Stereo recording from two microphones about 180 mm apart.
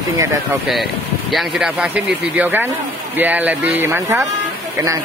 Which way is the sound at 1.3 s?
Centre (ahead or behind).